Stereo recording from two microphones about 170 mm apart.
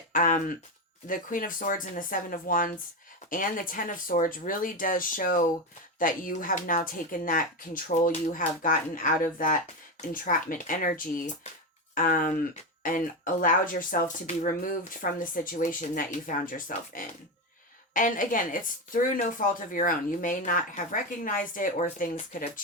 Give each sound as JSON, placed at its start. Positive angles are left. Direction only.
{"t": 0.1, "sound": "a woman's voice", "side_deg": 50}